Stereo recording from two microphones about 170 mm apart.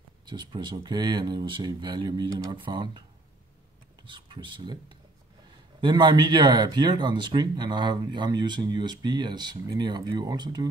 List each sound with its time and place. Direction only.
0.3 s speech: 25° right (ahead or behind)
4.0 s speech: 30° right (ahead or behind)